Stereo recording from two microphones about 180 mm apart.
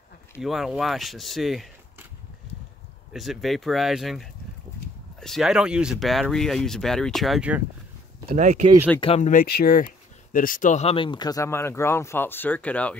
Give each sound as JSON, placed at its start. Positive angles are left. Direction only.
{"t": 0.4, "sound": "speech", "side_deg": 0}
{"t": 3.1, "sound": "speech", "side_deg": 0}
{"t": 8.3, "sound": "speech", "side_deg": -40}
{"t": 9.0, "sound": "speech", "side_deg": 35}
{"t": 9.3, "sound": "speech", "side_deg": 55}